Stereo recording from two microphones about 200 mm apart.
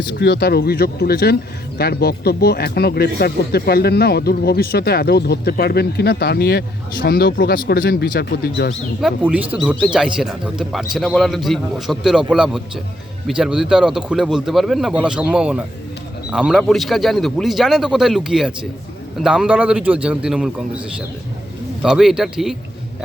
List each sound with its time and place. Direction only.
0.1 s speech: 55° left (ahead or behind)
9.0 s a man's voice: 5° right (ahead or behind)